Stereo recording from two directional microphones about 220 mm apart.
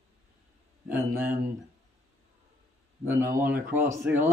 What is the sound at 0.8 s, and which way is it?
Speech, 10° right (ahead or behind).